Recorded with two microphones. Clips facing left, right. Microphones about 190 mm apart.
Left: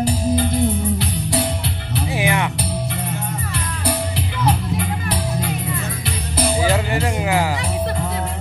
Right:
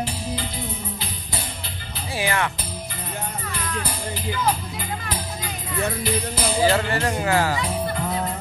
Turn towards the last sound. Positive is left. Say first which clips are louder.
# left 2 dB
turn(degrees=15)  # may be behind; listen again after turning